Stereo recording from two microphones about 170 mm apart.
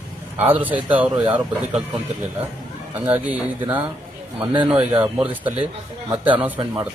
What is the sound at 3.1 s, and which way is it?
Speech, 10° right (ahead or behind).